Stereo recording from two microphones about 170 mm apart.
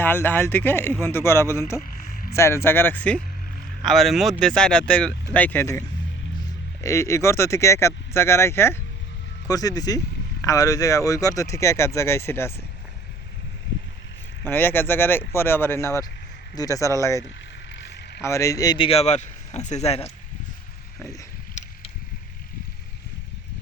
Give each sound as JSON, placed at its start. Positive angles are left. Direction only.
{"t": 0.0, "sound": "speech", "side_deg": 10}
{"t": 1.8, "sound": "a sound", "side_deg": 55}
{"t": 2.3, "sound": "speech", "side_deg": 15}
{"t": 6.8, "sound": "speech", "side_deg": 15}
{"t": 14.4, "sound": "speech", "side_deg": 10}
{"t": 17.2, "sound": "vehicle", "side_deg": 90}
{"t": 18.2, "sound": "speech", "side_deg": 15}
{"t": 18.9, "sound": "speech", "side_deg": 40}
{"t": 21.0, "sound": "speech", "side_deg": 20}